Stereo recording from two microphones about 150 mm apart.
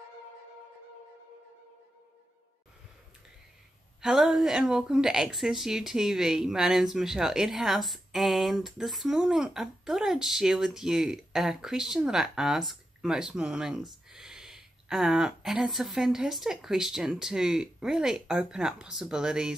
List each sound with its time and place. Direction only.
4.0 s a woman's voice: 5° right (ahead or behind)